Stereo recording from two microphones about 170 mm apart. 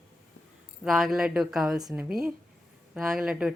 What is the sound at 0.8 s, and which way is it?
Speech, centre (ahead or behind).